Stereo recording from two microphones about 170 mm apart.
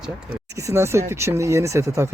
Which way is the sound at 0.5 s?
15° right (ahead or behind).